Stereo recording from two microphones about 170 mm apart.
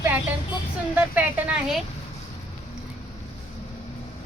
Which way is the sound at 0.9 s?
10° right (ahead or behind).